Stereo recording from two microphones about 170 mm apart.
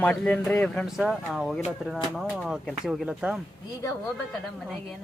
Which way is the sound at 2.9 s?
5° right (ahead or behind).